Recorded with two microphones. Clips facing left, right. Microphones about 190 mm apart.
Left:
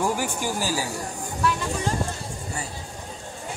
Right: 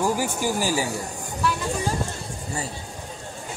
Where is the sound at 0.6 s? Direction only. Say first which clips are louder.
Right 3 dB; 15° right (ahead or behind).